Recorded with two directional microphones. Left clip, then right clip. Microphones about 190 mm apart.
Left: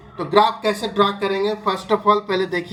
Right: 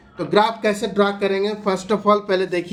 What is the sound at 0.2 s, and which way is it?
Speech, 15° right (ahead or behind).